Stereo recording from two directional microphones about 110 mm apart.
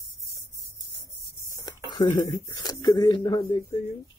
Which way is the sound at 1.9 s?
35° left (ahead or behind).